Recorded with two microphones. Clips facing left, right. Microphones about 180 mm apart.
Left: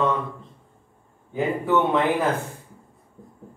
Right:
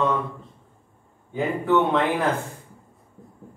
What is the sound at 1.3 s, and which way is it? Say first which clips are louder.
A man's voice: right 1 dB; centre (ahead or behind).